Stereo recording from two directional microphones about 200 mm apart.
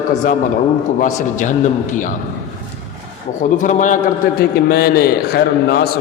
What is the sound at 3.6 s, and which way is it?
Speech, 40° left (ahead or behind).